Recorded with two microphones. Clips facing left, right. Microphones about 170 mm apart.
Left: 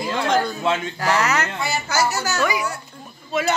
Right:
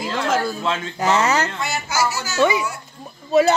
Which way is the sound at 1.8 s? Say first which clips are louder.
Left 1 dB; 65° left (ahead or behind).